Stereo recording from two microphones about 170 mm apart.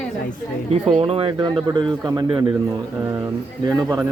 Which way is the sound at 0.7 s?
35° right (ahead or behind).